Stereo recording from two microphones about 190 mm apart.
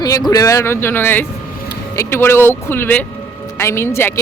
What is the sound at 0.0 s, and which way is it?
Speech, 20° left (ahead or behind).